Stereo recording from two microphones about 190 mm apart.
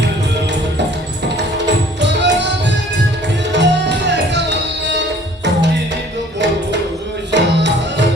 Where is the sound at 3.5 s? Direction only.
65° right (ahead or behind).